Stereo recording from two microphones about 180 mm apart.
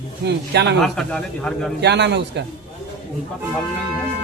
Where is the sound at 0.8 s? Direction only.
Centre (ahead or behind).